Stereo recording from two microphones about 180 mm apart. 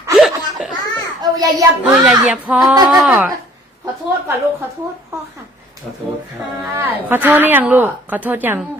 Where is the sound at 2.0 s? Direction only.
5° right (ahead or behind).